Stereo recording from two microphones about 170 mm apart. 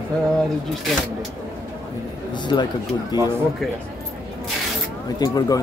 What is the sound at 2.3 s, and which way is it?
Speech, 25° left (ahead or behind).